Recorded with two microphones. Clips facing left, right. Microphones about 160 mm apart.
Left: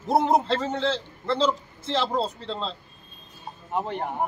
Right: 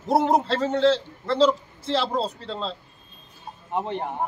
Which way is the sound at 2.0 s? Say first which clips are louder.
Even; 5° right (ahead or behind).